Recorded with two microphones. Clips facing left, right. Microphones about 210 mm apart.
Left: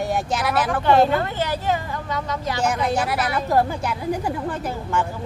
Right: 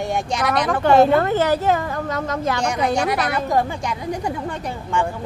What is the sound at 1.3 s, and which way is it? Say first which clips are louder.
Speech: right 6 dB; 45° right (ahead or behind).